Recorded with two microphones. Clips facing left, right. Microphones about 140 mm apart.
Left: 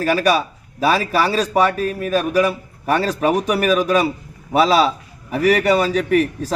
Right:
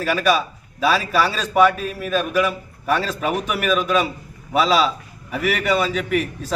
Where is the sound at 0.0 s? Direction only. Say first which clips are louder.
Left 2 dB; 40° left (ahead or behind).